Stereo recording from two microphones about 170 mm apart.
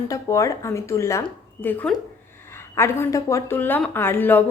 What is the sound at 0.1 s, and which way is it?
Speech, 20° left (ahead or behind).